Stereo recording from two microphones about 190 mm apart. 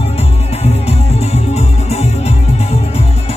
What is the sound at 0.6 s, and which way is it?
Music, 35° left (ahead or behind).